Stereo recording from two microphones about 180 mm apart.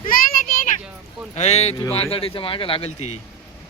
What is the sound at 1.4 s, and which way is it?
Speech, 35° left (ahead or behind).